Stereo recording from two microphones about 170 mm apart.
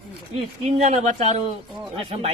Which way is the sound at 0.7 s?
40° right (ahead or behind).